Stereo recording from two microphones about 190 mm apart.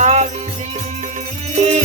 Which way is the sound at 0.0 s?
35° right (ahead or behind).